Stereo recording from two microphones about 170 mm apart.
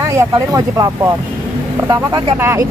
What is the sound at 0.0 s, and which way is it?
Speech, 20° right (ahead or behind).